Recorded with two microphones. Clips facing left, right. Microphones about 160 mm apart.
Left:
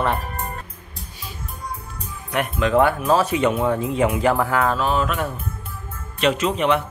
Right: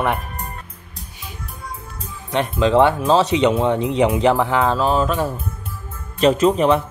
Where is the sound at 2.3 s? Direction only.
25° right (ahead or behind).